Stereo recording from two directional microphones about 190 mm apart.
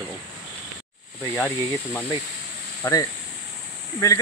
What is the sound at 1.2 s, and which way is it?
Speech, 15° left (ahead or behind).